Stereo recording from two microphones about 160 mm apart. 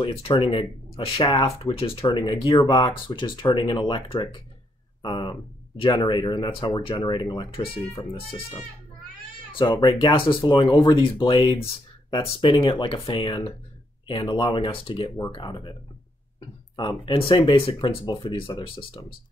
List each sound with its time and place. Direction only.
0.0 s speech: 35° left (ahead or behind)